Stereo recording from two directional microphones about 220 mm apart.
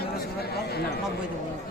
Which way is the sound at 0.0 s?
45° left (ahead or behind).